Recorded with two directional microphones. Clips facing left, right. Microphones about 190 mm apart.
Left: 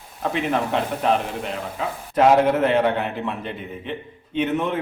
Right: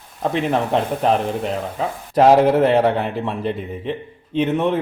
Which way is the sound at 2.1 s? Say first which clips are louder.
Right 3 dB; 35° right (ahead or behind).